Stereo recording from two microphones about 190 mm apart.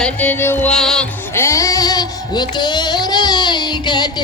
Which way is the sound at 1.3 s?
15° left (ahead or behind).